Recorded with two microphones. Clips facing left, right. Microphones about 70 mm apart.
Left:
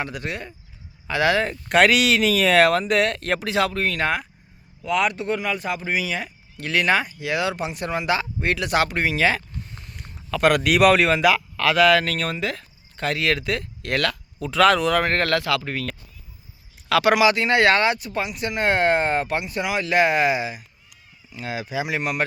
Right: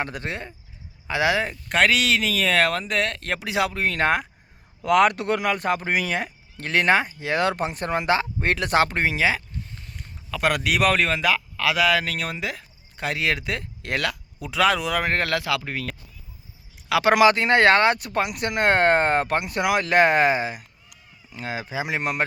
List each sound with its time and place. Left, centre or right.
0.0 s speech: right; by 1.5 s centre
1.5 s speech: centre
3.4 s speech: centre
3.9 s speech: right
4.8 s speech: right
9.1 s speech: centre
9.6 s speech: centre
17.2 s speech: right
17.9 s speech: right